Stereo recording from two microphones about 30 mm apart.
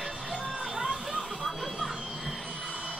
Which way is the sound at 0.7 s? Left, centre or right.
Right.